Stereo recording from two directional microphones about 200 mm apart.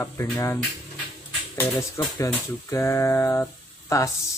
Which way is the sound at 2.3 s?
10° left (ahead or behind).